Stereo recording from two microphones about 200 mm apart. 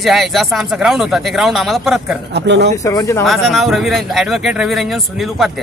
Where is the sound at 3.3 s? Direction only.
Centre (ahead or behind).